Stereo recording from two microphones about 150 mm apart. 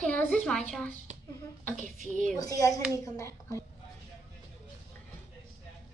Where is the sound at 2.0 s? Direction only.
60° right (ahead or behind).